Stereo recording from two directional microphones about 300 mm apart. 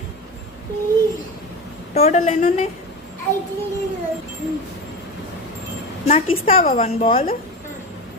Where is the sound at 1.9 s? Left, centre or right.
Left.